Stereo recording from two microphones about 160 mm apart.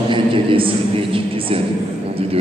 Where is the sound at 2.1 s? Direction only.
35° right (ahead or behind).